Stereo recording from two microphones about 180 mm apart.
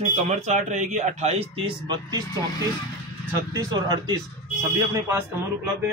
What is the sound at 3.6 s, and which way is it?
Speech, 20° right (ahead or behind).